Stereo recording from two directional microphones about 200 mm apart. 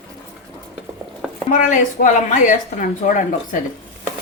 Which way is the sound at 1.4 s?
40° left (ahead or behind).